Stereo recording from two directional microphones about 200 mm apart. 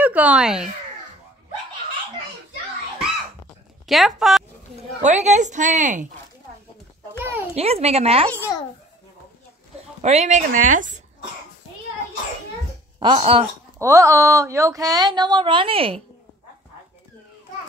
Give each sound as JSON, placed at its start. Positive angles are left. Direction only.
{"t": 0.0, "sound": "speech", "side_deg": -5}
{"t": 3.8, "sound": "speech", "side_deg": 0}
{"t": 5.0, "sound": "a woman's voice", "side_deg": -35}
{"t": 7.2, "sound": "a sound", "side_deg": -10}
{"t": 7.5, "sound": "a woman's voice", "side_deg": -30}
{"t": 8.3, "sound": "a child's voice", "side_deg": 10}
{"t": 10.0, "sound": "a woman's voice", "side_deg": -35}
{"t": 13.0, "sound": "speech", "side_deg": -30}
{"t": 13.7, "sound": "speech", "side_deg": -15}